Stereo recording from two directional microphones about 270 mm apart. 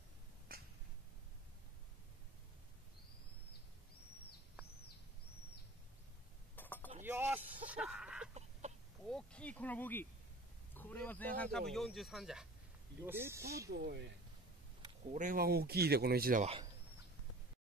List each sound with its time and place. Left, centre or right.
0.5 s finger snapping: right
6.5 s a sound: centre
7.0 s a sound: centre
9.1 s speech: centre
13.7 s speech: right
15.1 s speech: right